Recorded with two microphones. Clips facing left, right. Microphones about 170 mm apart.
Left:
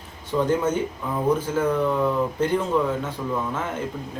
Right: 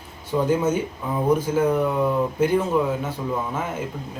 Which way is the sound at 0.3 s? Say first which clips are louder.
Right 1 dB; 10° right (ahead or behind).